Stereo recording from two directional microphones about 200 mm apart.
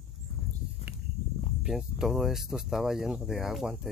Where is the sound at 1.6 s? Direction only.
5° right (ahead or behind).